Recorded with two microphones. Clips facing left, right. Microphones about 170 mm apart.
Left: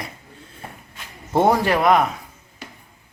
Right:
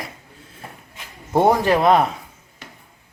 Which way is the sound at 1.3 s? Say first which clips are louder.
Right 1 dB; 15° right (ahead or behind).